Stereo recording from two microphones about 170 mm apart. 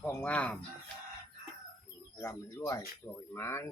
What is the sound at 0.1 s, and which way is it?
Speech, 5° left (ahead or behind).